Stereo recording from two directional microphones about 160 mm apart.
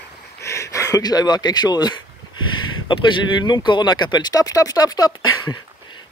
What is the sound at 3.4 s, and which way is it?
Speech, 30° left (ahead or behind).